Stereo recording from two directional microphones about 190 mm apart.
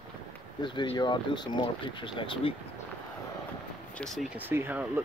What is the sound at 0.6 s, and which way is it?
Speech, 25° left (ahead or behind).